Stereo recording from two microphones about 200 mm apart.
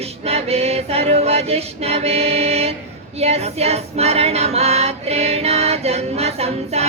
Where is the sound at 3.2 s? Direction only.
30° right (ahead or behind).